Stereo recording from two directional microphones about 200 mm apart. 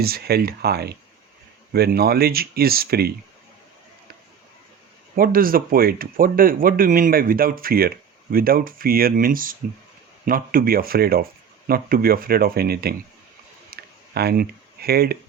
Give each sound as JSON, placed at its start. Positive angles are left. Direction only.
{"t": 0.0, "sound": "speech", "side_deg": -50}
{"t": 5.1, "sound": "speech", "side_deg": -45}
{"t": 13.7, "sound": "a sound", "side_deg": -55}